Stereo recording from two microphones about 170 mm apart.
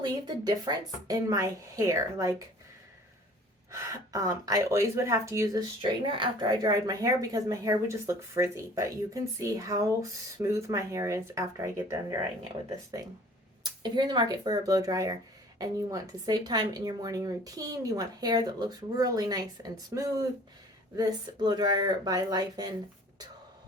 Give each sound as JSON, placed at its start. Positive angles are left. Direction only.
{"t": 0.0, "sound": "speech", "side_deg": -25}
{"t": 3.7, "sound": "speech", "side_deg": -20}